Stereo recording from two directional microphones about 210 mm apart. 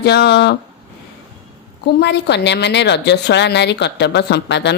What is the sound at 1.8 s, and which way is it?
A woman's voice, 55° left (ahead or behind).